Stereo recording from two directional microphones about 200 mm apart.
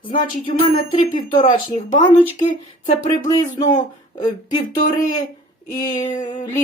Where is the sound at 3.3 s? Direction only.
20° left (ahead or behind).